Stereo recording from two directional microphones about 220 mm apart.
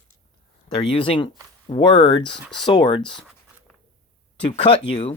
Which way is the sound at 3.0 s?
Centre (ahead or behind).